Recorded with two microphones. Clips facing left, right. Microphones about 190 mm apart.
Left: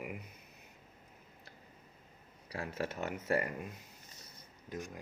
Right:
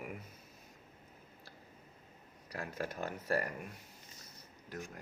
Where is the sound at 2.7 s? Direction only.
25° left (ahead or behind).